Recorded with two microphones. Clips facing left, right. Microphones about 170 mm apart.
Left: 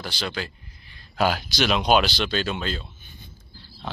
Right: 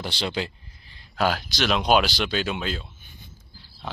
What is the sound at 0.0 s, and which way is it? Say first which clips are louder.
Speech: right 2 dB; 25° right (ahead or behind).